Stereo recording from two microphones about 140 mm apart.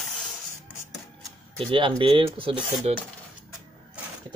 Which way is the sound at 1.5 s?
40° right (ahead or behind).